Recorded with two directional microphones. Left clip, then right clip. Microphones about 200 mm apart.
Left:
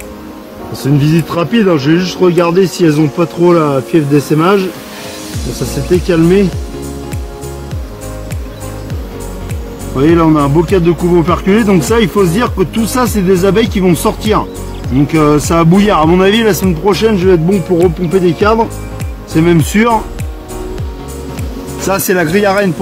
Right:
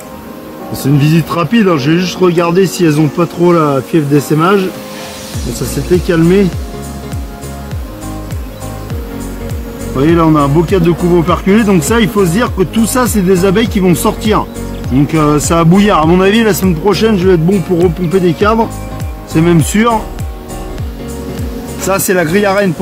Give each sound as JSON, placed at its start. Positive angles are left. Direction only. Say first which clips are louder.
{"t": 0.8, "sound": "speech", "louder": "even", "side_deg": -25}
{"t": 6.0, "sound": "speech", "louder": "left 1 dB", "side_deg": -10}
{"t": 9.9, "sound": "speech", "louder": "even", "side_deg": -15}
{"t": 21.8, "sound": "speech", "louder": "even", "side_deg": -15}